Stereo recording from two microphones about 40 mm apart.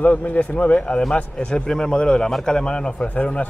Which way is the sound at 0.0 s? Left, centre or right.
Left.